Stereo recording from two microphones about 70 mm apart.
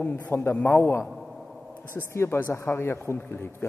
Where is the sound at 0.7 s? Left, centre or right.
Left.